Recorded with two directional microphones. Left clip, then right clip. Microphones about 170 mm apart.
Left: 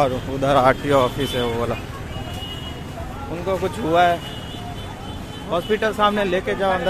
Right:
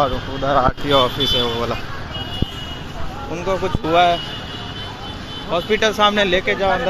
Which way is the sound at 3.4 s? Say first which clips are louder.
Right 2 dB; 5° right (ahead or behind).